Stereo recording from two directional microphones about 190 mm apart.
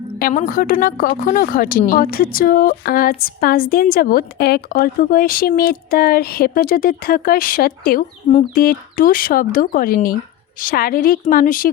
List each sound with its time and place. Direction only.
0.2 s speech: 45° left (ahead or behind)